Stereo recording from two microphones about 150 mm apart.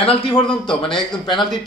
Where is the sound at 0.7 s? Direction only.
35° left (ahead or behind).